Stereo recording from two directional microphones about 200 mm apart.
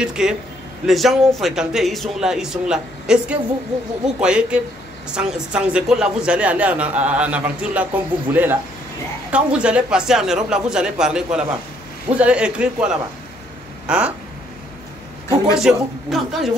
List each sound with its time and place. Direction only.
0.0 s a man's voice: 5° right (ahead or behind)
15.5 s a man's voice: centre (ahead or behind)